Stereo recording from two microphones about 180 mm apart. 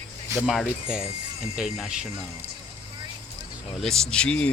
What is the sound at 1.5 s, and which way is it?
Speech, centre (ahead or behind).